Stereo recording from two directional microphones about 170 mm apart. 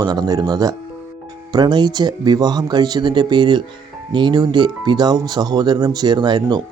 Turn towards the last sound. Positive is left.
turn(degrees=-25)  # may be behind; listen again after turning